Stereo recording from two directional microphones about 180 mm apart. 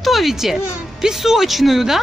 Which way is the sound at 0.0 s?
Centre (ahead or behind).